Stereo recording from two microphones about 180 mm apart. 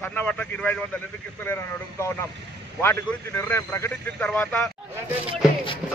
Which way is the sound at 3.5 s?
10° left (ahead or behind).